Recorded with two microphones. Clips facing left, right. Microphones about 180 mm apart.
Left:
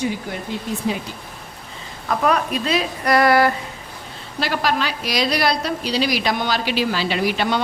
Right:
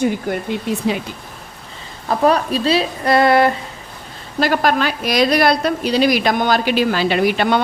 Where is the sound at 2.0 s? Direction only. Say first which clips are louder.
Right 4 dB; 30° right (ahead or behind).